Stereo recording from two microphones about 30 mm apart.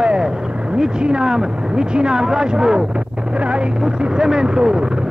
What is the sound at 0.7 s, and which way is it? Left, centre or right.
Speech, right.